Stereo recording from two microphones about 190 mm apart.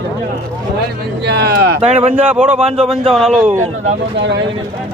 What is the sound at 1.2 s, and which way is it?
Speech, 60° right (ahead or behind).